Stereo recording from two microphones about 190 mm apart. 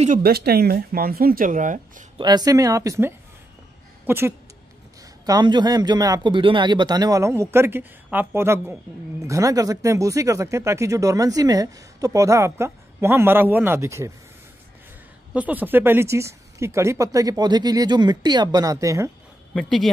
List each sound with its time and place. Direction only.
0.2 s speech: 55° right (ahead or behind)
2.1 s speech: 20° right (ahead or behind)
5.2 s a man's voice: 20° right (ahead or behind)
15.3 s speech: 10° right (ahead or behind)
19.5 s speech: 5° left (ahead or behind)